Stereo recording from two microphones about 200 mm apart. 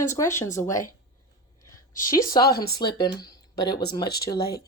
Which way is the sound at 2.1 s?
20° left (ahead or behind).